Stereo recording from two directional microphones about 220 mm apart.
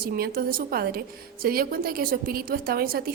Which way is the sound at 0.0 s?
40° right (ahead or behind).